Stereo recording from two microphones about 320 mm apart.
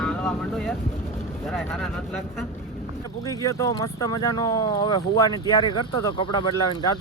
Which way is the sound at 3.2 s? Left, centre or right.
Centre.